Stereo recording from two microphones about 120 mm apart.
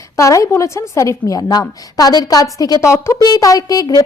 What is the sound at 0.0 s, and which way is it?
A woman's voice, 25° left (ahead or behind).